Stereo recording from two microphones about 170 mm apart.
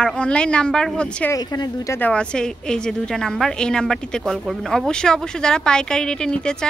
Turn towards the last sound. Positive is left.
turn(degrees=5)  # may be behind; listen again after turning